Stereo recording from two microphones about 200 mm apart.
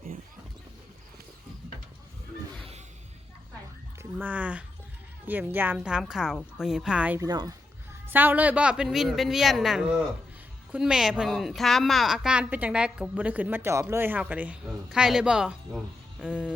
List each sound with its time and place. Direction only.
4.2 s speech: 5° right (ahead or behind)
7.2 s speech: 20° right (ahead or behind)